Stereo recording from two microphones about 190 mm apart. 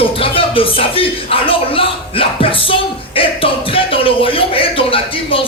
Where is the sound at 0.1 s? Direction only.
30° left (ahead or behind).